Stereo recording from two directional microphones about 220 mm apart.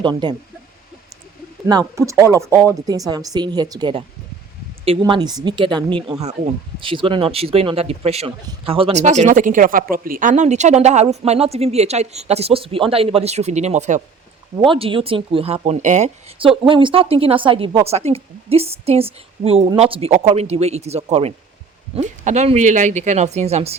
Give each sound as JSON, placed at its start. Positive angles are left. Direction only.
{"t": 0.0, "sound": "speech", "side_deg": -20}
{"t": 2.0, "sound": "speech", "side_deg": -15}